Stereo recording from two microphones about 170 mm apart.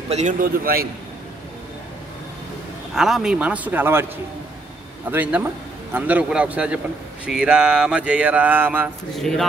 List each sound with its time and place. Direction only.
0.1 s a man's voice: 45° right (ahead or behind)
2.9 s speech: centre (ahead or behind)
5.1 s speech: 10° right (ahead or behind)
9.1 s speech: centre (ahead or behind)